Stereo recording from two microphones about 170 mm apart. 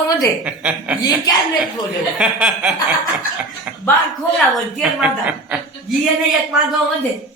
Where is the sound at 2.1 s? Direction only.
5° right (ahead or behind).